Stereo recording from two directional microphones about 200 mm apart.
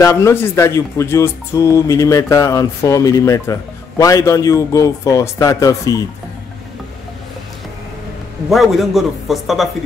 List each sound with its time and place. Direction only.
0.0 s speech: 15° left (ahead or behind)
8.5 s speech: centre (ahead or behind)